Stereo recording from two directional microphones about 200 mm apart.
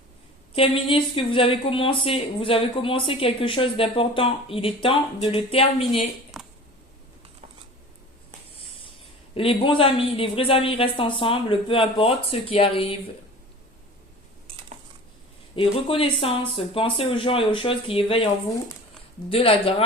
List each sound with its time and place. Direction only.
0.5 s speech: 25° left (ahead or behind)
6.3 s a sound: 5° right (ahead or behind)
9.3 s speech: 25° left (ahead or behind)
15.5 s speech: 25° left (ahead or behind)
19.3 s speech: 30° left (ahead or behind)